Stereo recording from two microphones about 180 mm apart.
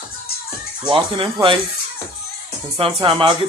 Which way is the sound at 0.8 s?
30° right (ahead or behind).